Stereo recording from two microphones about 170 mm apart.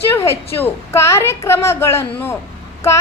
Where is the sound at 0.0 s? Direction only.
15° left (ahead or behind).